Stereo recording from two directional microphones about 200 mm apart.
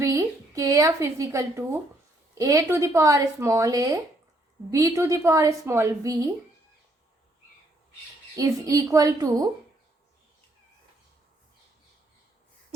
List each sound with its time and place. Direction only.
0.0 s a woman's voice: 15° right (ahead or behind)
8.4 s a woman's voice: 15° right (ahead or behind)